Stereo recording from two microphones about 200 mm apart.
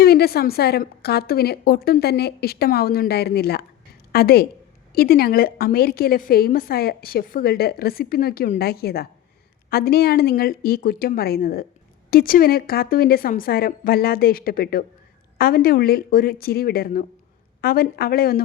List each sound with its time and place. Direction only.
0.0 s a woman's voice: 50° left (ahead or behind)